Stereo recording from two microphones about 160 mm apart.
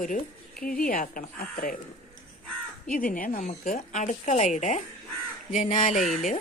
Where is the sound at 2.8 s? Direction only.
60° left (ahead or behind).